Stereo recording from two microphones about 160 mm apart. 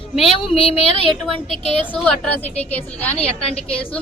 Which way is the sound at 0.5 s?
35° left (ahead or behind).